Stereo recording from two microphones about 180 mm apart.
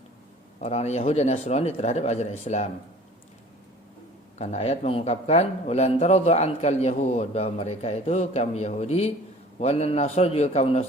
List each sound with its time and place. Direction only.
0.6 s a man's voice: 35° left (ahead or behind)
4.4 s a man's voice: 35° left (ahead or behind)